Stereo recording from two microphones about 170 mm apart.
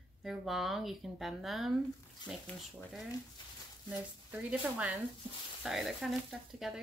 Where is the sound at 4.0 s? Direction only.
10° right (ahead or behind).